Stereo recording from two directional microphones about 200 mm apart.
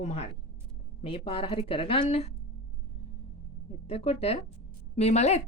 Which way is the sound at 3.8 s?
30° left (ahead or behind).